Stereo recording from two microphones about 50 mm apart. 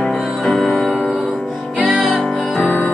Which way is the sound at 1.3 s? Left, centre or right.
Right.